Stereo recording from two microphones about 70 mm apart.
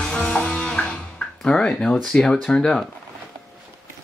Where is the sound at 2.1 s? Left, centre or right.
Centre.